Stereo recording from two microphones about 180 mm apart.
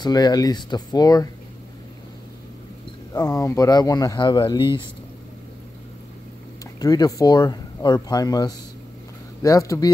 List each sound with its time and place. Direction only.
0.0 s speech: 20° left (ahead or behind)
3.1 s speech: 20° left (ahead or behind)
6.6 s speech: 20° left (ahead or behind)